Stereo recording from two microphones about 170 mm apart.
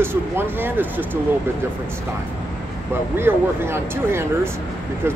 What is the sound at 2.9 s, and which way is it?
Speech, 15° right (ahead or behind).